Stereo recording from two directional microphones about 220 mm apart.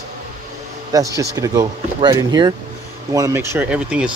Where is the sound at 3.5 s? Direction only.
5° right (ahead or behind).